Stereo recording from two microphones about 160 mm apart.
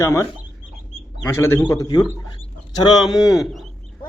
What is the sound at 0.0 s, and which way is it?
Speech, 15° left (ahead or behind).